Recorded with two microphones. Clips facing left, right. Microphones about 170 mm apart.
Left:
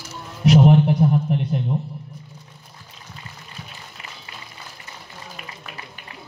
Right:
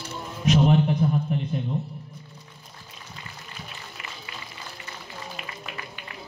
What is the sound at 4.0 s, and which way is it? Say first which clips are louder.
Music: even; 30° left (ahead or behind).